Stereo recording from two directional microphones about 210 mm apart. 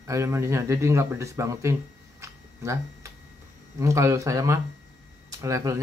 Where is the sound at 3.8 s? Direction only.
15° right (ahead or behind).